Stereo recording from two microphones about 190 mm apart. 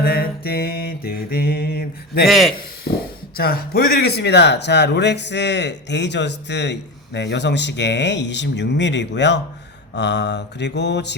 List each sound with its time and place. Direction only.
0.0 s mantra: 55° left (ahead or behind)
2.2 s a man's voice: centre (ahead or behind)
3.3 s speech: 55° left (ahead or behind)